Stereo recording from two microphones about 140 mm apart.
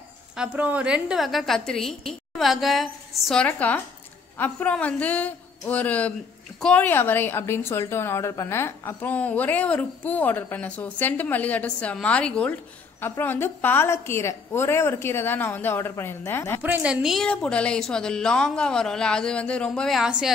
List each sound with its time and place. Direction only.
0.4 s a woman's voice: 10° right (ahead or behind)
3.4 s a woman's voice: 10° left (ahead or behind)
16.6 s a woman's voice: 10° right (ahead or behind)